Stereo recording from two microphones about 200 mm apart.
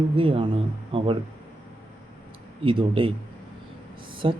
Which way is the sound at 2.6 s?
25° right (ahead or behind).